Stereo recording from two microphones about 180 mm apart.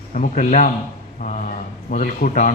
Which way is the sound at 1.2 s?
45° left (ahead or behind).